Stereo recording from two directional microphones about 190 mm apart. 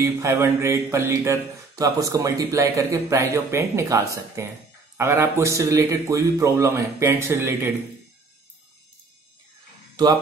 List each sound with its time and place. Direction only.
0.0 s speech: 15° right (ahead or behind)
10.0 s speech: 20° right (ahead or behind)